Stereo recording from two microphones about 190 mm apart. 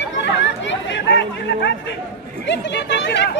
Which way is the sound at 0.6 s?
70° left (ahead or behind).